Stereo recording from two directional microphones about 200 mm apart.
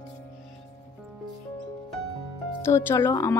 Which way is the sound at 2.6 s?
15° left (ahead or behind).